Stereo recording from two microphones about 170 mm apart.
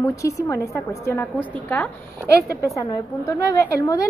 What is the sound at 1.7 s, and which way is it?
Speech, 5° left (ahead or behind).